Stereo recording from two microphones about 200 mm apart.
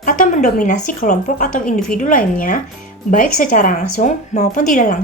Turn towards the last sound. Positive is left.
turn(degrees=40)  # may be behind; listen again after turning